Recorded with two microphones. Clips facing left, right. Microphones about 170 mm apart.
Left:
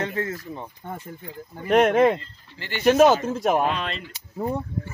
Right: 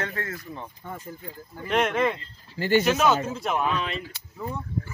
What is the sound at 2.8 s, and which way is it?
Speech, 50° left (ahead or behind).